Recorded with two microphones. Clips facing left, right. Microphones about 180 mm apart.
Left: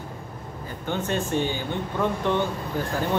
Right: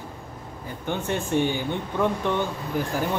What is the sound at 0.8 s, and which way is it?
Speech, 15° right (ahead or behind).